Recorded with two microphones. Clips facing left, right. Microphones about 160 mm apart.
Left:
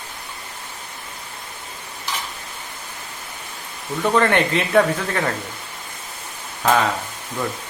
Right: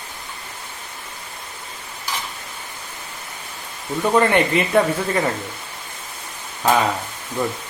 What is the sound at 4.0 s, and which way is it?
Speech, 5° right (ahead or behind).